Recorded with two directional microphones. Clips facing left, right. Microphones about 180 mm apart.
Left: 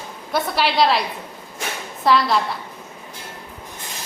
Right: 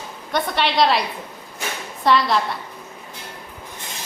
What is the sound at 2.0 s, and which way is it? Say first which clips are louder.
Speech: even; centre (ahead or behind).